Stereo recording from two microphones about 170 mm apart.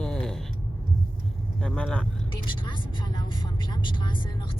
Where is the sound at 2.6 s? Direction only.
30° left (ahead or behind).